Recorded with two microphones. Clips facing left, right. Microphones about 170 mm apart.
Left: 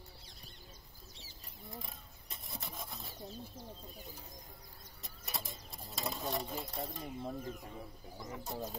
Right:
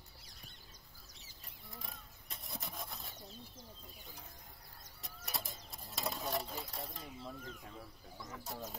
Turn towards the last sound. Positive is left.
turn(degrees=50)  # may be behind; listen again after turning